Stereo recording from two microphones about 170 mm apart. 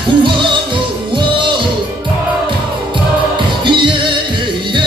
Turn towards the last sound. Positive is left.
turn(degrees=-30)  # may be behind; listen again after turning